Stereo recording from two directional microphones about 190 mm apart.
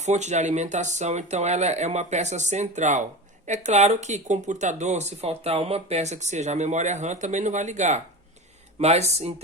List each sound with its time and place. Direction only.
0.0 s speech: 35° right (ahead or behind)